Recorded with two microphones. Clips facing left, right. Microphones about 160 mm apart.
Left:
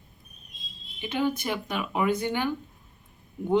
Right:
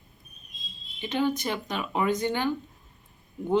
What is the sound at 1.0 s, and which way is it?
Speech, 10° left (ahead or behind).